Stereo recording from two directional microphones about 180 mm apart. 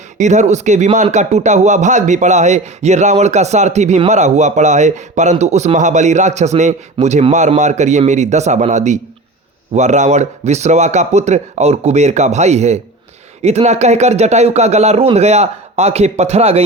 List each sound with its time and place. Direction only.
0.2 s speech: 40° right (ahead or behind)